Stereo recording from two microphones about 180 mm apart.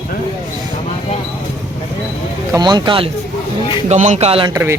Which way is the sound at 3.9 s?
40° right (ahead or behind).